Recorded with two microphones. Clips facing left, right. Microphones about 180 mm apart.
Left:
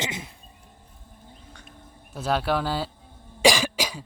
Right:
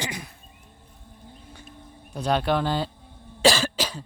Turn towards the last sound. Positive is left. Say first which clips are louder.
# even
turn(degrees=10)  # may be behind; listen again after turning